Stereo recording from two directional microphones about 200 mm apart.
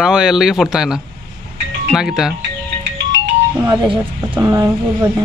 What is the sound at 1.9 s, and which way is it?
Speech, 5° right (ahead or behind).